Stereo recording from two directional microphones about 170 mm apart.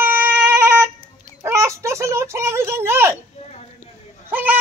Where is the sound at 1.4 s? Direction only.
15° right (ahead or behind).